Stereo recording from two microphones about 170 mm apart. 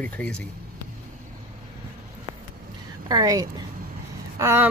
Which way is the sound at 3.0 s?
20° right (ahead or behind).